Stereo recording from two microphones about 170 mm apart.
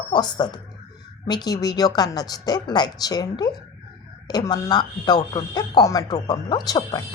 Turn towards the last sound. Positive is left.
turn(degrees=25)  # may be behind; listen again after turning